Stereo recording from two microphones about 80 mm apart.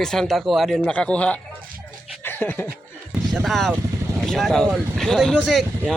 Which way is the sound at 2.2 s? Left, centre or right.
Left.